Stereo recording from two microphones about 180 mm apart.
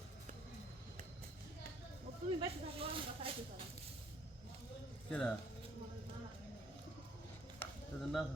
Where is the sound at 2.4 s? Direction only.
30° right (ahead or behind).